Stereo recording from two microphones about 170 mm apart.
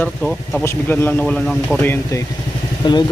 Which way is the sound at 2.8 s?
25° left (ahead or behind).